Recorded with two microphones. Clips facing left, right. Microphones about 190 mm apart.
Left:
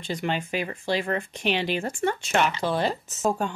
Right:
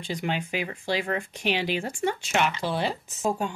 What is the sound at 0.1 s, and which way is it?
Speech, 10° right (ahead or behind).